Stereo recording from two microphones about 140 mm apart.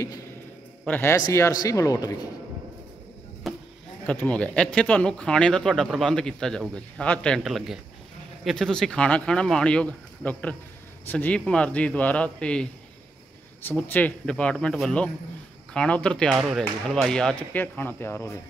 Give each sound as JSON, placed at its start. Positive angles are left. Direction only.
{"t": 0.8, "sound": "speech", "side_deg": 15}
{"t": 3.4, "sound": "chop", "side_deg": 0}
{"t": 4.0, "sound": "speech", "side_deg": 10}